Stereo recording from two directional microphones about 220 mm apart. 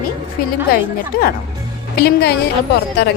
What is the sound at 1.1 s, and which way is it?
Speech, 40° left (ahead or behind).